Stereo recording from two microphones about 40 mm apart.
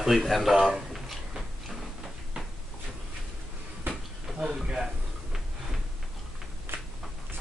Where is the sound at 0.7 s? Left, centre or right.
Centre.